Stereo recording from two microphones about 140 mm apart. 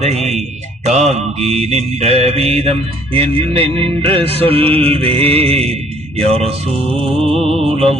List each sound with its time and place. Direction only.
0.0 s music: 50° right (ahead or behind)
0.9 s mantra: 55° right (ahead or behind)